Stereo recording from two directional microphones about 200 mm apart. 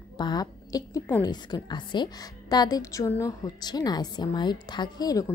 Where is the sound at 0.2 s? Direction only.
20° left (ahead or behind).